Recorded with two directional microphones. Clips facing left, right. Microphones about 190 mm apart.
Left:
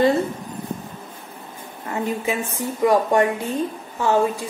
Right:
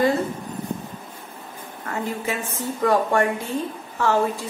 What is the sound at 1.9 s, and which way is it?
A woman's voice, 15° left (ahead or behind).